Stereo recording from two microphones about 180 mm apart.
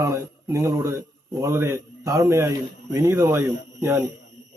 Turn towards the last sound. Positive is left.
turn(degrees=-15)  # may be behind; listen again after turning